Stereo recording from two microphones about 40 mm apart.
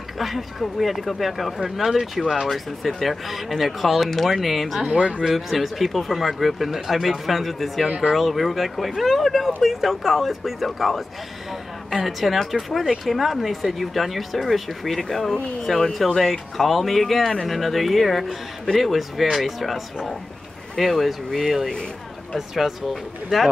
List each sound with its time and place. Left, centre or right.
0.2 s speech: centre
4.8 s speech: right
5.2 s speech: centre
22.6 s speech: centre